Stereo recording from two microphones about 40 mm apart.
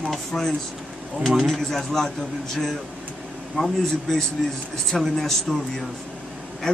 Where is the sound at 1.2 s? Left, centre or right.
Centre.